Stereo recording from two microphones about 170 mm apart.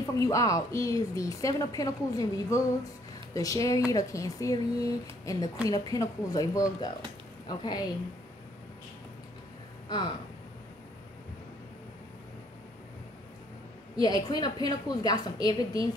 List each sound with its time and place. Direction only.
0.0 s a woman's voice: 20° left (ahead or behind)
9.8 s speech: 25° left (ahead or behind)
14.0 s a woman's voice: 25° left (ahead or behind)